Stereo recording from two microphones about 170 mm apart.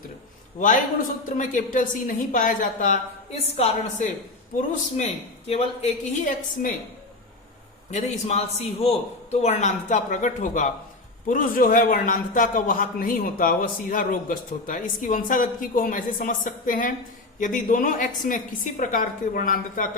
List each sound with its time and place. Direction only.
0.6 s a man's voice: 50° left (ahead or behind)
3.3 s speech: 35° left (ahead or behind)
6.2 s a man's voice: 55° left (ahead or behind)
7.9 s a man's voice: 40° left (ahead or behind)